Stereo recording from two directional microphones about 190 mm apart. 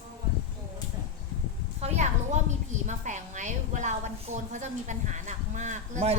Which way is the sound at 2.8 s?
40° right (ahead or behind).